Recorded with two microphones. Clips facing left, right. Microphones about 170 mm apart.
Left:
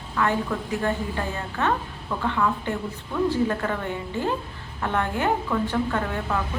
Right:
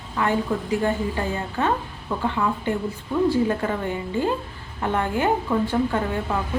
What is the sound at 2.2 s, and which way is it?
A woman's voice, 15° right (ahead or behind).